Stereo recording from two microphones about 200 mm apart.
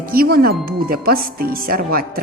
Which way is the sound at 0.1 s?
50° right (ahead or behind).